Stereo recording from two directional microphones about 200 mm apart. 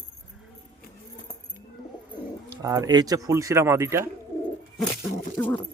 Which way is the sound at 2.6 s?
20° right (ahead or behind).